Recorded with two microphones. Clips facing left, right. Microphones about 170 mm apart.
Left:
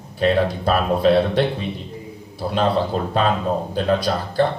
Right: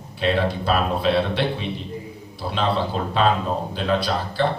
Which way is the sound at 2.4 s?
50° left (ahead or behind).